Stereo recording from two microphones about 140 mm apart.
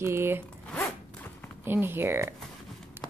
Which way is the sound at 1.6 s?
15° right (ahead or behind).